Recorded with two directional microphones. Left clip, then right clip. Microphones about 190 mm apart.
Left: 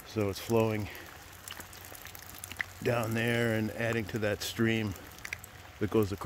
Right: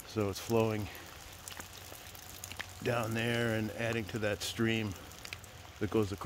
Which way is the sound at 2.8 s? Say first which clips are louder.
Left 3 dB; 30° left (ahead or behind).